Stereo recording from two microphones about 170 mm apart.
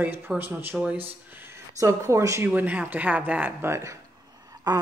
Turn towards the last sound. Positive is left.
turn(degrees=-25)  # may be behind; listen again after turning